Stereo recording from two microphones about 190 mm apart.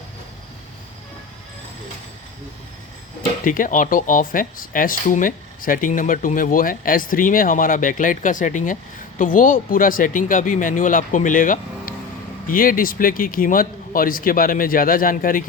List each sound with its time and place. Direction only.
3.4 s speech: 45° left (ahead or behind)